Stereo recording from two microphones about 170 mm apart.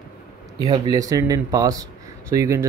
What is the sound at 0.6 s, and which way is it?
A man's voice, 20° right (ahead or behind).